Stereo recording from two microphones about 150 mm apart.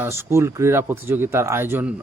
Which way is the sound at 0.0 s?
15° right (ahead or behind).